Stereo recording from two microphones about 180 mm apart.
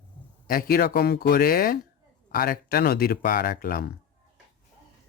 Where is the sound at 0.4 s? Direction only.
55° left (ahead or behind).